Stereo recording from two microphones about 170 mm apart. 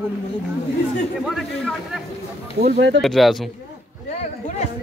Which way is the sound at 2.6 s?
80° right.